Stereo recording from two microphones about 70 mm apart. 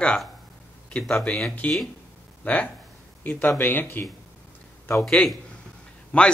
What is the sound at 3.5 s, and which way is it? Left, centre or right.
Speech, left.